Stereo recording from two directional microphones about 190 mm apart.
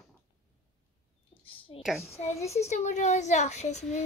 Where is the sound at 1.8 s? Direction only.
Centre (ahead or behind).